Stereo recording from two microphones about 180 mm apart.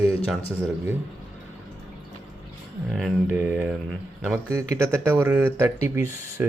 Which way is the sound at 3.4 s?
10° right (ahead or behind).